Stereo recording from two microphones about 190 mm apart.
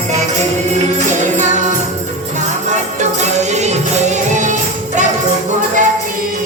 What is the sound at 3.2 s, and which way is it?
Music, 35° right (ahead or behind).